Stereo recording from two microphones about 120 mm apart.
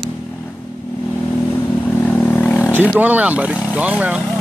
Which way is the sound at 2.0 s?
15° left (ahead or behind).